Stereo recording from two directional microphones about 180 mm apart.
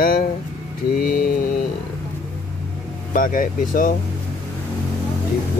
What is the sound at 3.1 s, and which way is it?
Speech, 50° left (ahead or behind).